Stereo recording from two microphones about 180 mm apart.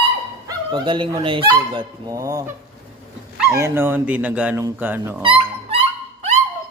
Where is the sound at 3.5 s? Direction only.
15° right (ahead or behind).